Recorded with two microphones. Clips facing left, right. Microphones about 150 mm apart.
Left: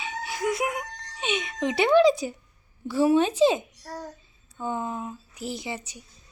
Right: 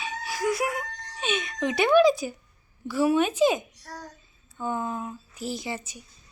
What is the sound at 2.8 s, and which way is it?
A woman's voice, 30° left (ahead or behind).